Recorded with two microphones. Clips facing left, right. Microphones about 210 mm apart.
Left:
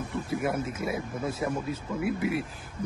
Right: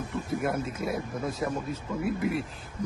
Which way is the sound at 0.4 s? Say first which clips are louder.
Even; 5° left (ahead or behind).